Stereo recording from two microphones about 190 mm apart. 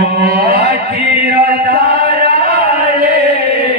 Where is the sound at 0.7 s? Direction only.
55° right (ahead or behind).